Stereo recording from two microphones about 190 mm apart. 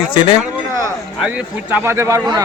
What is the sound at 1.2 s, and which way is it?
Speech, 5° right (ahead or behind).